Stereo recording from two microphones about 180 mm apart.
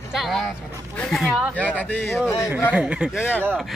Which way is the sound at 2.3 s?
15° left (ahead or behind).